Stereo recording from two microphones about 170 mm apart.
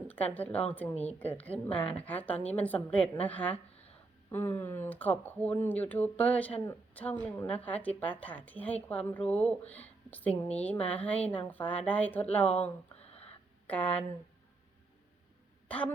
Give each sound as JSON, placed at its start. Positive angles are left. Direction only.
{"t": 0.1, "sound": "speech", "side_deg": 10}
{"t": 13.1, "sound": "a sound", "side_deg": 35}
{"t": 13.7, "sound": "speech", "side_deg": 10}